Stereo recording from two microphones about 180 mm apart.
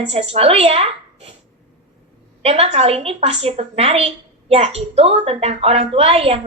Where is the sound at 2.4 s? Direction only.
35° right (ahead or behind).